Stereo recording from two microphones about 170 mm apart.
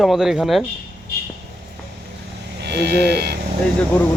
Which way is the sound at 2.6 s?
80° right.